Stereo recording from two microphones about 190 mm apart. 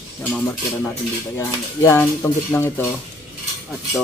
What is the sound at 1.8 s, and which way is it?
Speech, 15° left (ahead or behind).